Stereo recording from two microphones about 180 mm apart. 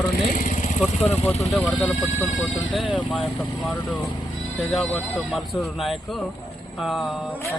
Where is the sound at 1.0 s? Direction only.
35° left (ahead or behind).